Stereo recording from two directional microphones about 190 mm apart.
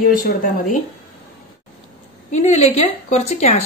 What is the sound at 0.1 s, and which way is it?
Speech, 50° left (ahead or behind).